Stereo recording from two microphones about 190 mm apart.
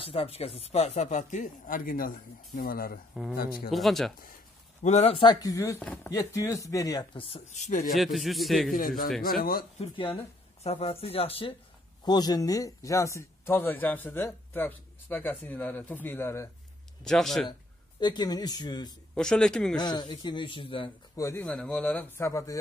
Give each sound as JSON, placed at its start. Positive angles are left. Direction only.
{"t": 0.0, "sound": "a man's voice", "side_deg": 30}
{"t": 3.7, "sound": "a man's voice", "side_deg": 0}
{"t": 4.8, "sound": "speech", "side_deg": 35}
{"t": 7.9, "sound": "a man's voice", "side_deg": 0}
{"t": 8.7, "sound": "a man's voice", "side_deg": 45}
{"t": 9.8, "sound": "speech", "side_deg": 25}
{"t": 17.0, "sound": "a man's voice", "side_deg": 0}
{"t": 18.0, "sound": "speech", "side_deg": 20}
{"t": 19.1, "sound": "a man's voice", "side_deg": 5}
{"t": 19.8, "sound": "speech", "side_deg": 20}
{"t": 21.2, "sound": "speech", "side_deg": 10}